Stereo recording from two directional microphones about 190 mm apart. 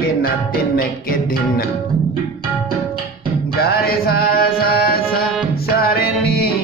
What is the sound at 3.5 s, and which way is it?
Music, 55° left (ahead or behind).